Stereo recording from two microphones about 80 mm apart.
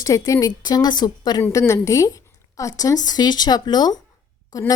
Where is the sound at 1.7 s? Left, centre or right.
Left.